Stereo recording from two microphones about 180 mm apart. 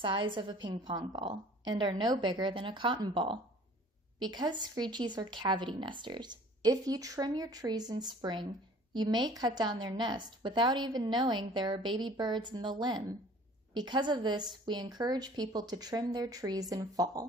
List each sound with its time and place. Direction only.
0.0 s speech: 25° right (ahead or behind)